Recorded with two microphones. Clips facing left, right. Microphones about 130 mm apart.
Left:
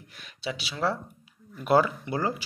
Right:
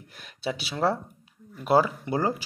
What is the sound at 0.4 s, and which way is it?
Speech, 50° right (ahead or behind).